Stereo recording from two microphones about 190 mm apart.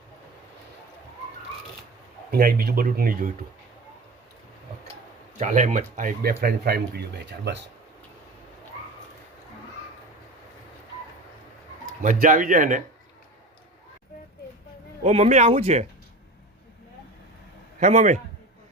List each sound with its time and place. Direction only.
2.3 s speech: 50° right (ahead or behind)
5.4 s speech: 40° right (ahead or behind); by 7.6 s 60° right (ahead or behind)
12.0 s speech: 45° right (ahead or behind)
15.0 s speech: 35° right (ahead or behind)
17.7 s a man's voice: 40° right (ahead or behind)